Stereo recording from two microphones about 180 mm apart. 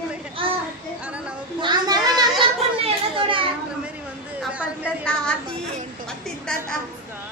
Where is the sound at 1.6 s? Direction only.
25° right (ahead or behind).